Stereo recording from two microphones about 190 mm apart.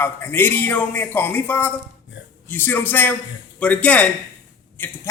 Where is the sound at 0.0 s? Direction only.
10° left (ahead or behind).